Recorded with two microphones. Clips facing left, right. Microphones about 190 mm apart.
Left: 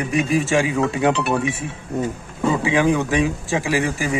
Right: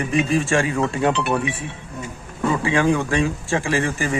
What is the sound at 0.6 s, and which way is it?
Speech, 15° left (ahead or behind).